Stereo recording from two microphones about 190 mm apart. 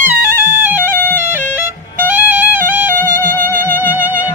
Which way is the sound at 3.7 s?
10° right (ahead or behind).